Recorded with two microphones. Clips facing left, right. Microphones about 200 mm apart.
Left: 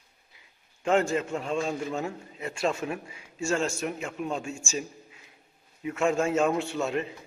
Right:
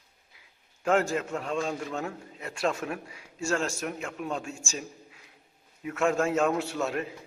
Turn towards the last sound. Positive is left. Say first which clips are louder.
# left 1 dB
turn(degrees=0)  # may be behind; listen again after turning